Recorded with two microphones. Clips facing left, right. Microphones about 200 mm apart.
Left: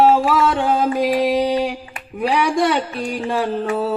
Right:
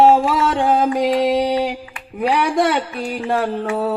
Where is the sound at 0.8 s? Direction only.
20° right (ahead or behind).